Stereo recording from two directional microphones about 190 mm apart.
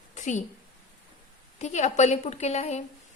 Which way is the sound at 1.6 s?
35° left (ahead or behind).